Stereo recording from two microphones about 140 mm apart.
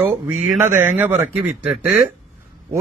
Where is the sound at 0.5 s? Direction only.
15° right (ahead or behind).